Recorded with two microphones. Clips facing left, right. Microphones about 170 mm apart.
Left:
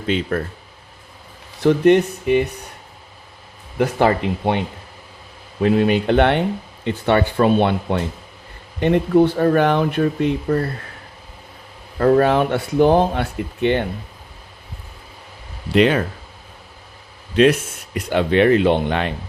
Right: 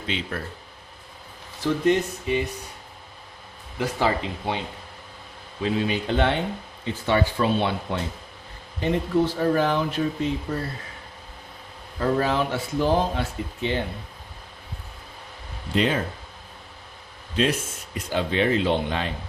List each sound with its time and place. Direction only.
0.1 s speech: 50° left (ahead or behind)
1.6 s speech: 65° left (ahead or behind)
3.8 s speech: 60° left (ahead or behind)
11.9 s speech: 60° left (ahead or behind)
15.7 s speech: 75° left (ahead or behind)
17.3 s speech: 70° left (ahead or behind)